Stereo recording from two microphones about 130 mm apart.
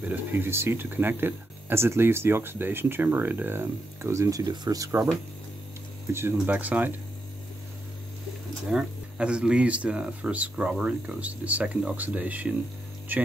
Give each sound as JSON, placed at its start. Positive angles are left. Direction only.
{"t": 0.0, "sound": "speech", "side_deg": -15}
{"t": 6.1, "sound": "speech", "side_deg": -20}
{"t": 8.7, "sound": "speech", "side_deg": -10}